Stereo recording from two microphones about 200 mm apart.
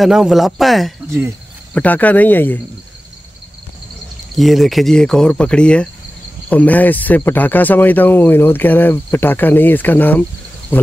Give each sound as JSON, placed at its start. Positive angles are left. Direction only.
{"t": 0.0, "sound": "speech", "side_deg": 0}
{"t": 4.4, "sound": "speech", "side_deg": 0}